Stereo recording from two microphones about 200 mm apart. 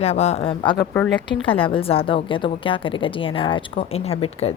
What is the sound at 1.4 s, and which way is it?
A woman's voice, 25° left (ahead or behind).